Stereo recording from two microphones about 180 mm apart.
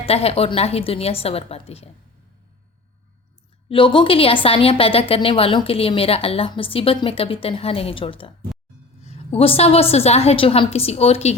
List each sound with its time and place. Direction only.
0.0 s a woman's voice: 35° left (ahead or behind)
3.7 s a woman's voice: 30° left (ahead or behind)